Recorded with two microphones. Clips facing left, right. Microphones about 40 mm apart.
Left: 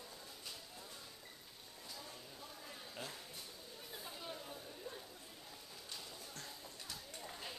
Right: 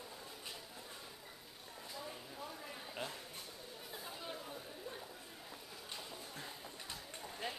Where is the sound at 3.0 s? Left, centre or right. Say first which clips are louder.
Right 4 dB; right.